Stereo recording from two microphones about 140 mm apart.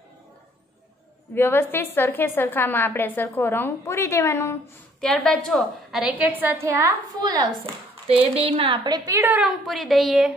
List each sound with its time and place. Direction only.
1.3 s a woman's voice: 15° left (ahead or behind)
5.0 s a woman's voice: 5° left (ahead or behind); by 7.5 s 30° right (ahead or behind)
8.1 s speech: 45° right (ahead or behind)
8.8 s a woman's voice: 30° right (ahead or behind)
9.4 s a woman's voice: centre (ahead or behind)